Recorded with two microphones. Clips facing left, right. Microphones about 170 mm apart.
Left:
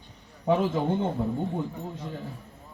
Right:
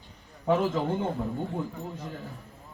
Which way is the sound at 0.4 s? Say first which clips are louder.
Left 1 dB; 20° left (ahead or behind).